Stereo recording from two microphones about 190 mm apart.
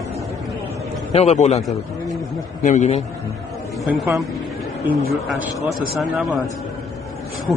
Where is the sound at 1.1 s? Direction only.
35° left (ahead or behind).